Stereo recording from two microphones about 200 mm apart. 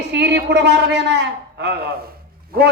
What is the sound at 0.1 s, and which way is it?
A man's voice, 60° right (ahead or behind).